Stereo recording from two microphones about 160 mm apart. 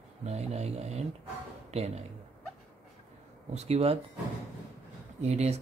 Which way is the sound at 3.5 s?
40° right (ahead or behind).